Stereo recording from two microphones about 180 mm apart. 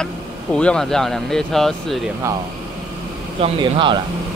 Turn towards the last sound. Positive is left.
turn(degrees=-25)  # may be behind; listen again after turning